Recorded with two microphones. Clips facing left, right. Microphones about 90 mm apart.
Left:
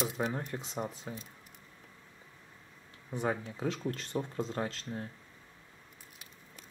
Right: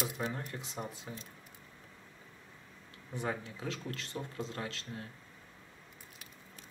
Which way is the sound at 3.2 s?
30° left (ahead or behind).